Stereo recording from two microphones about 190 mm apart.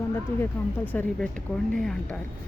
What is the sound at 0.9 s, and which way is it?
Speech, 10° left (ahead or behind).